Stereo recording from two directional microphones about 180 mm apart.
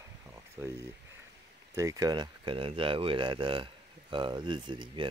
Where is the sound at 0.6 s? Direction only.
15° right (ahead or behind).